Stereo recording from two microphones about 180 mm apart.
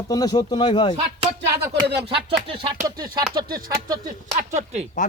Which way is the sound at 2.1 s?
30° right (ahead or behind).